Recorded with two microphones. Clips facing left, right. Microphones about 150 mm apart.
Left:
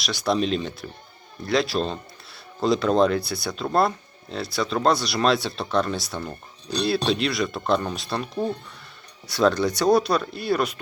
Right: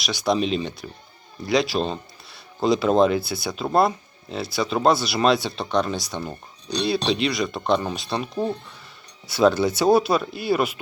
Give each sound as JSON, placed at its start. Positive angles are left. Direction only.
{"t": 0.0, "sound": "speech", "side_deg": 0}